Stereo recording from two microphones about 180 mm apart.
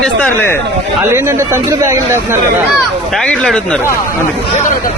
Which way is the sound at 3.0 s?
5° left (ahead or behind).